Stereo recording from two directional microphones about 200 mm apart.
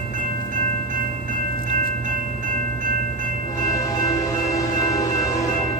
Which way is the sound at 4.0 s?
15° left (ahead or behind).